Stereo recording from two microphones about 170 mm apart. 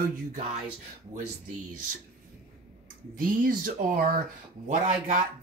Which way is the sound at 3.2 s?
55° right (ahead or behind).